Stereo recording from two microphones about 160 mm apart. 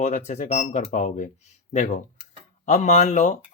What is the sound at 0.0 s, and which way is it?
Speech, 45° left (ahead or behind).